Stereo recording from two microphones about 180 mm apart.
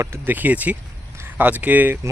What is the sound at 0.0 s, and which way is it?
Speech, 15° right (ahead or behind).